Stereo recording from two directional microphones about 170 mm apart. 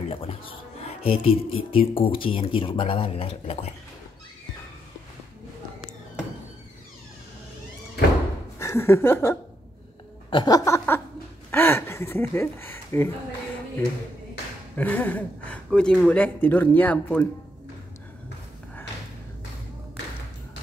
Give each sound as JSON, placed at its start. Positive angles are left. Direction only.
{"t": 0.1, "sound": "speech", "side_deg": 35}
{"t": 8.5, "sound": "speech", "side_deg": 15}
{"t": 10.3, "sound": "a sound", "side_deg": 25}
{"t": 11.5, "sound": "speech", "side_deg": 10}
{"t": 14.8, "sound": "speech", "side_deg": 10}